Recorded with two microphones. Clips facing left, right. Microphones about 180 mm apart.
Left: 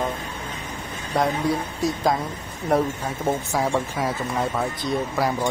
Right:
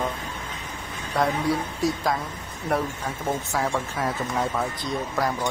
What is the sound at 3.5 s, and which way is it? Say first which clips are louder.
Speech: left 3 dB; 15° left (ahead or behind).